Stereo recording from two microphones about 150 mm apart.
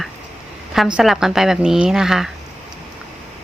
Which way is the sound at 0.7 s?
5° right (ahead or behind).